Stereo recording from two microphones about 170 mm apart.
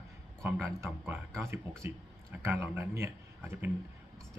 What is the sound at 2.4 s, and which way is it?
Speech, 15° right (ahead or behind).